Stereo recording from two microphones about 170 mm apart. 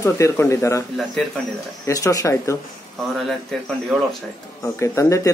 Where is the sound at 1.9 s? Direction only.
20° left (ahead or behind).